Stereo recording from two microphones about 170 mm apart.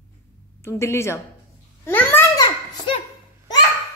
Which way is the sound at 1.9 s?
10° left (ahead or behind).